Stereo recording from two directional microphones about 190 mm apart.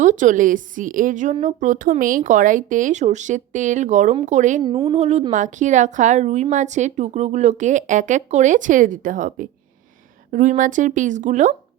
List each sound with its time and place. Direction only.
0.0 s a woman's voice: 40° right (ahead or behind)
4.6 s a woman's voice: 20° right (ahead or behind)
4.9 s a woman's voice: 35° right (ahead or behind)